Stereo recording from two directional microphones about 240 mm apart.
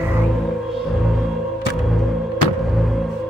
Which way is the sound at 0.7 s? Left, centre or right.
Centre.